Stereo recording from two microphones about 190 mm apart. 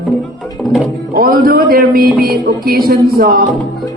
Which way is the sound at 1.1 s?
50° right (ahead or behind).